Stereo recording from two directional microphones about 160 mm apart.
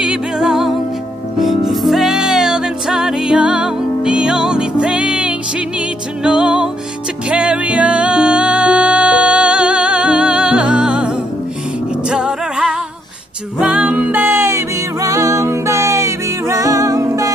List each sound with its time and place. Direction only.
0.0 s music: 5° right (ahead or behind); by 17.3 s 20° right (ahead or behind)